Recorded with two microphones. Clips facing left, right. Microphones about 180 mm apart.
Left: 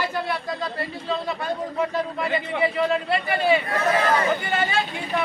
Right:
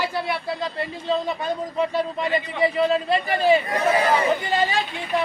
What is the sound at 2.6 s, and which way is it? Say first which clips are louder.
Speech: right 3 dB; 30° right (ahead or behind).